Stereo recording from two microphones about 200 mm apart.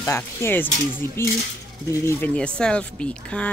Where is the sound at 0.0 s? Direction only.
10° left (ahead or behind).